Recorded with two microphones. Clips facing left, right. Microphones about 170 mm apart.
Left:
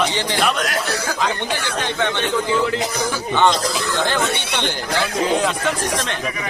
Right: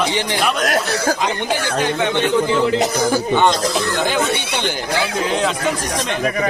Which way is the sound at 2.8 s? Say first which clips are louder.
Right 6 dB; 45° right (ahead or behind).